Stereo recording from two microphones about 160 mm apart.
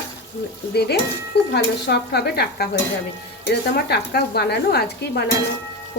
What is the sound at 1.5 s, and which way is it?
Speech, 90° left.